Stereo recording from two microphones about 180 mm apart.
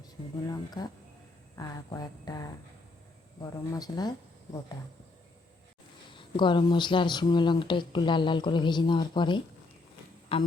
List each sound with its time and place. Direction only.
0.0 s speech: 20° left (ahead or behind)
3.7 s speech: 20° left (ahead or behind)
6.1 s speech: 25° left (ahead or behind)